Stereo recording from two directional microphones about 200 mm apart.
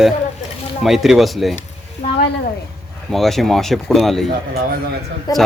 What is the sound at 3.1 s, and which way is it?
Speech, centre (ahead or behind).